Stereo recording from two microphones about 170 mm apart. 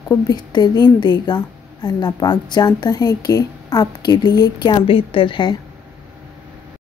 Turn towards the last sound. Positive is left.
turn(degrees=30)  # may be behind; listen again after turning